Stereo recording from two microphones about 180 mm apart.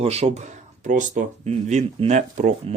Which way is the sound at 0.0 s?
35° right (ahead or behind).